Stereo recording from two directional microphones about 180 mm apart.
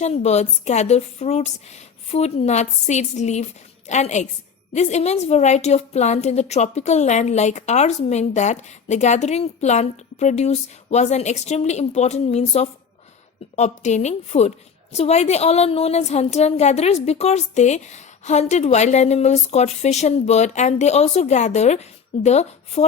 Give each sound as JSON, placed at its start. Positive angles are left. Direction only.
{"t": 0.0, "sound": "a woman's voice", "side_deg": 40}